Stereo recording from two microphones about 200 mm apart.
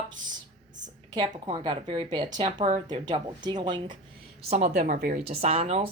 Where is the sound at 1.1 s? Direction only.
20° right (ahead or behind).